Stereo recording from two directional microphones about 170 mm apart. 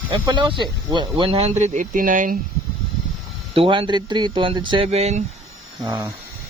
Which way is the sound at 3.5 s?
30° right (ahead or behind).